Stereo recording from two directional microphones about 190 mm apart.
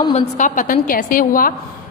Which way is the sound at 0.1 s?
40° left (ahead or behind).